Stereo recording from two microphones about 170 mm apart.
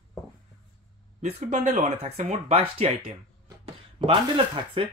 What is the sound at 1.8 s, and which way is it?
Speech, 40° right (ahead or behind).